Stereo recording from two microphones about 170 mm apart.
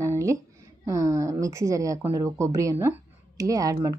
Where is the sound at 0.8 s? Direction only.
20° right (ahead or behind).